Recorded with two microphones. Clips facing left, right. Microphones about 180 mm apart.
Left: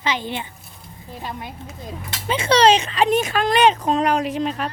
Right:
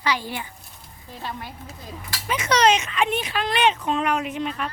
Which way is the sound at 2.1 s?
30° left (ahead or behind).